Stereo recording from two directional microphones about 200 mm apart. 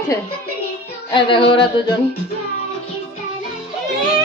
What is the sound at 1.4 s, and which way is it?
Music, 55° left (ahead or behind).